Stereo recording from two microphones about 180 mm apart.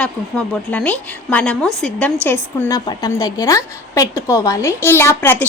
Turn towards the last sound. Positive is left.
turn(degrees=10)  # may be behind; listen again after turning